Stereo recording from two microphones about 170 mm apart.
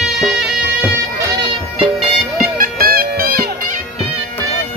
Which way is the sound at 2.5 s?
60° right (ahead or behind).